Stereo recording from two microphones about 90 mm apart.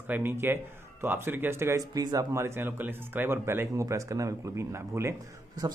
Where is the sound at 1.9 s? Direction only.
45° right (ahead or behind).